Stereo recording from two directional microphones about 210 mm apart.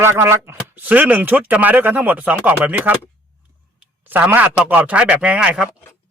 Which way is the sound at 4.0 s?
10° right (ahead or behind).